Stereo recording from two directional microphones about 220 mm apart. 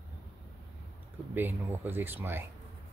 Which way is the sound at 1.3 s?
10° right (ahead or behind).